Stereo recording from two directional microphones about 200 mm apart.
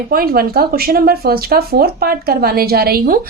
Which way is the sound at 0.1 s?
50° right (ahead or behind).